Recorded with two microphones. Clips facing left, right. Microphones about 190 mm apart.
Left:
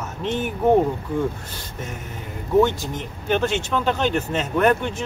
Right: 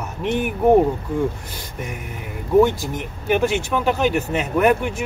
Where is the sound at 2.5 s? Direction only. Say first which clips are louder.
Right 2 dB; 10° right (ahead or behind).